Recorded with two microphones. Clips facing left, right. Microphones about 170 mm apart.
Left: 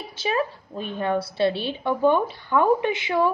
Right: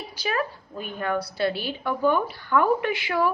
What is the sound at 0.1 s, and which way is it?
A woman's voice, 25° left (ahead or behind).